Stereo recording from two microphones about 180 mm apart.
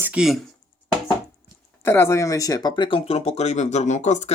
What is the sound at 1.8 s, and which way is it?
Speech, 15° left (ahead or behind).